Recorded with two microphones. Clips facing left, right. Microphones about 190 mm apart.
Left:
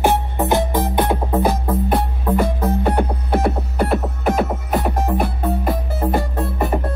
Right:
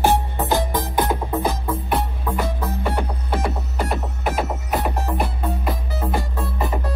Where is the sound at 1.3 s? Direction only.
55° left (ahead or behind).